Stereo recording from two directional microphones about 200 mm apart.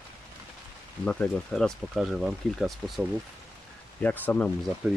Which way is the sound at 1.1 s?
5° left (ahead or behind).